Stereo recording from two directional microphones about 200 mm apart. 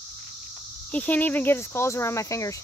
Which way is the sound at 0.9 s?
5° left (ahead or behind).